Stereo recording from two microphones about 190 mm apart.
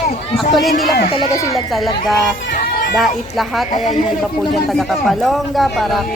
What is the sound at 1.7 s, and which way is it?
Speech, centre (ahead or behind).